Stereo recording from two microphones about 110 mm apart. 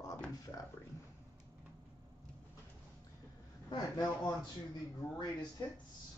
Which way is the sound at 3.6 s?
35° left (ahead or behind).